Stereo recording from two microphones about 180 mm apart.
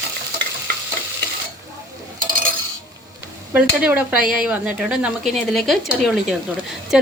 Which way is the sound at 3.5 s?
5° right (ahead or behind).